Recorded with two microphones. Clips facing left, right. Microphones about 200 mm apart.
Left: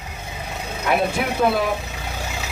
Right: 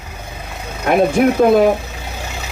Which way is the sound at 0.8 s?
45° right (ahead or behind).